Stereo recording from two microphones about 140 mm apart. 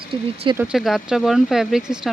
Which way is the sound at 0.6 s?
5° right (ahead or behind).